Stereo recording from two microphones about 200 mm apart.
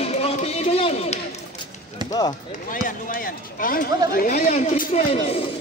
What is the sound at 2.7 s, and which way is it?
Speech, 45° left (ahead or behind).